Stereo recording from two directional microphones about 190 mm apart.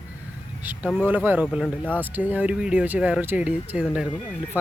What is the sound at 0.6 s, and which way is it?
Speech, 10° right (ahead or behind).